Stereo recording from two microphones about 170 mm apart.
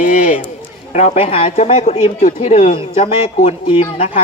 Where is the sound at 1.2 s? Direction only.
35° left (ahead or behind).